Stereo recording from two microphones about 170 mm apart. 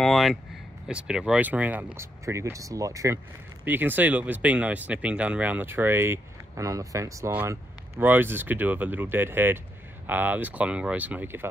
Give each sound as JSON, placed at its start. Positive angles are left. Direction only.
{"t": 0.0, "sound": "speech", "side_deg": 0}